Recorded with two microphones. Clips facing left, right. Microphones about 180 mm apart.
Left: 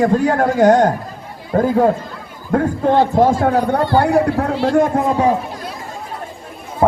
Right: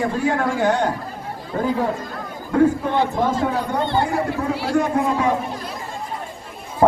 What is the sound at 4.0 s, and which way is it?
Speech, 65° left (ahead or behind).